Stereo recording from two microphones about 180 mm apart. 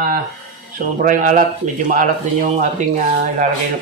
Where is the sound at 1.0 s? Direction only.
45° right (ahead or behind).